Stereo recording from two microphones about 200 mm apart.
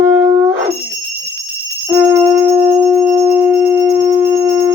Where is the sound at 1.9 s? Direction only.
10° right (ahead or behind).